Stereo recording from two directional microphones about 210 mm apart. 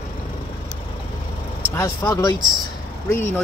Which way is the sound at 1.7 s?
15° left (ahead or behind).